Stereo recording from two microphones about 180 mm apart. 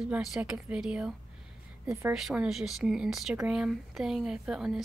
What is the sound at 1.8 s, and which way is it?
Speech, 15° right (ahead or behind).